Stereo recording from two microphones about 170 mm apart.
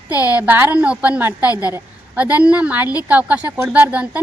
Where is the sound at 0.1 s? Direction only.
20° left (ahead or behind).